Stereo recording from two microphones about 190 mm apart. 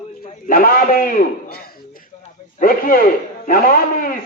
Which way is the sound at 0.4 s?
50° left (ahead or behind).